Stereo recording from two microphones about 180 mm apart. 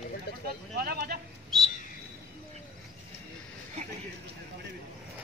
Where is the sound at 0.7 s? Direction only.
60° right (ahead or behind).